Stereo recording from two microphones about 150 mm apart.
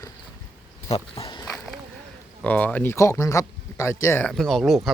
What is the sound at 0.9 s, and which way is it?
Dog, 40° left (ahead or behind).